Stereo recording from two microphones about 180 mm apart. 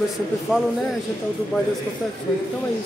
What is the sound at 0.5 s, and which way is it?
Speech, 5° right (ahead or behind).